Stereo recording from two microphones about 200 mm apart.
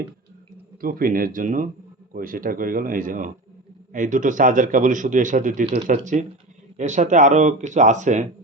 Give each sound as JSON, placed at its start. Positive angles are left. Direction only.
{"t": 0.8, "sound": "a man's voice", "side_deg": -45}